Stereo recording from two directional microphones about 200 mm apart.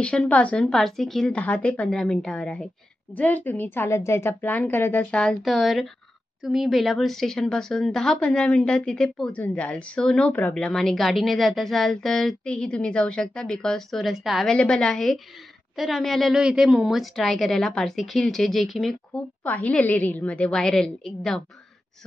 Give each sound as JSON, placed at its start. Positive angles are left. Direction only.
{"t": 0.0, "sound": "a woman's voice", "side_deg": 5}